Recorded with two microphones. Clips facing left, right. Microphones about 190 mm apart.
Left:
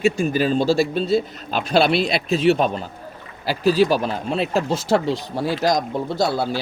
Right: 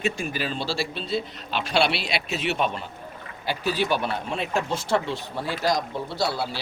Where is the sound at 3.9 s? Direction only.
90° left.